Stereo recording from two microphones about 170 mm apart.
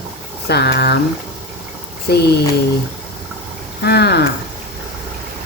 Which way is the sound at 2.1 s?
75° left (ahead or behind).